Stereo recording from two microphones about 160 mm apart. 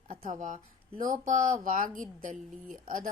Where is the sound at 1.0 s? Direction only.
55° right (ahead or behind).